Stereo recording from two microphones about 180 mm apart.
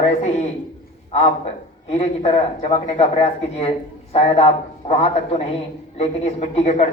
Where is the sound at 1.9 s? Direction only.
35° left (ahead or behind).